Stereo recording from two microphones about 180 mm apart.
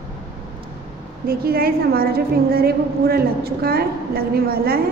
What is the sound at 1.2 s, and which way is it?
A woman's voice, 55° right (ahead or behind).